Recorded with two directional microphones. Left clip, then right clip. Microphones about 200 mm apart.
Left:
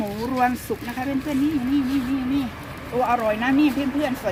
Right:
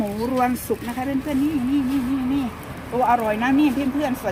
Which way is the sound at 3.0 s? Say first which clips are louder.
Right 2 dB; 10° right (ahead or behind).